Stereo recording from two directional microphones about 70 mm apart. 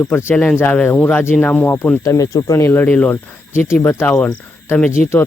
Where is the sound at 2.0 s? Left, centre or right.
Left.